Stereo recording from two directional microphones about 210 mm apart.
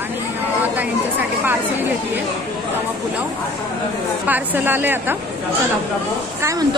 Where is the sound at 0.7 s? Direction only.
10° right (ahead or behind).